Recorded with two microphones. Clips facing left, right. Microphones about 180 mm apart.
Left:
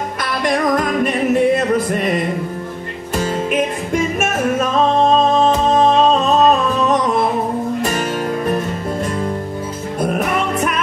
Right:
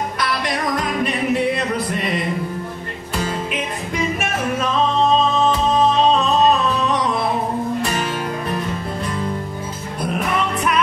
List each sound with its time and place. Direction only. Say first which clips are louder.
0.2 s music: left 6 dB; 45° left (ahead or behind)
10.0 s music: left 3 dB; 45° left (ahead or behind)